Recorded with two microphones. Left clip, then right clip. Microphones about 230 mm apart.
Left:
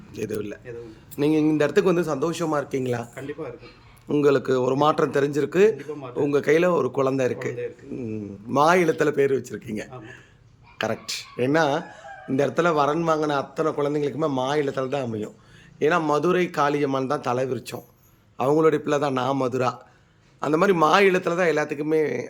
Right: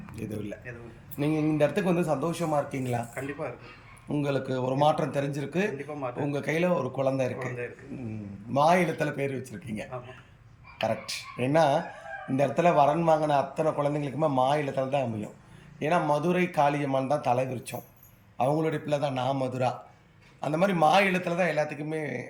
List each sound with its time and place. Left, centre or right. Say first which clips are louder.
1.2 s a man's voice: left 5 dB; centre